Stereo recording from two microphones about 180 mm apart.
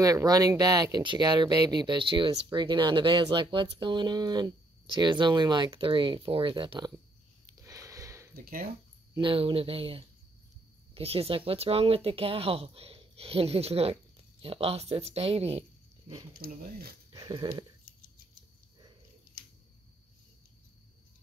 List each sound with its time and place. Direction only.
0.0 s speech: 20° right (ahead or behind)
7.5 s a sound: 15° right (ahead or behind)
9.1 s speech: 30° right (ahead or behind)
16.3 s speech: 55° right (ahead or behind)
17.1 s dog: 30° right (ahead or behind)